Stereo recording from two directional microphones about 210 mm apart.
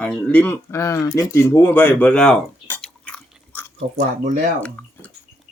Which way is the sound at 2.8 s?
5° left (ahead or behind).